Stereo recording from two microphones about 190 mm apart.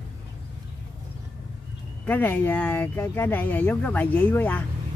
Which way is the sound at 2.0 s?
10° left (ahead or behind).